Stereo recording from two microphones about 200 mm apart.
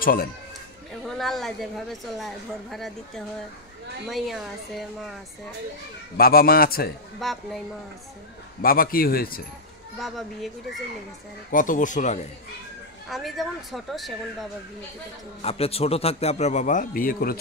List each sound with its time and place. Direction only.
0.0 s a man's voice: 45° left (ahead or behind)
1.0 s a woman's voice: centre (ahead or behind)
4.1 s a woman's voice: centre (ahead or behind)
6.1 s a man's voice: 50° left (ahead or behind)
7.2 s a woman's voice: centre (ahead or behind)
8.6 s a man's voice: 45° left (ahead or behind)
9.9 s a woman's voice: centre (ahead or behind)
11.5 s a man's voice: 40° left (ahead or behind)
13.1 s a woman's voice: centre (ahead or behind)
15.4 s a man's voice: 30° left (ahead or behind); by 17.4 s 45° left (ahead or behind)